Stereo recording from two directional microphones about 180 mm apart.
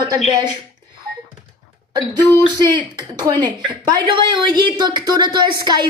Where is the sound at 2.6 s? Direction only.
25° right (ahead or behind).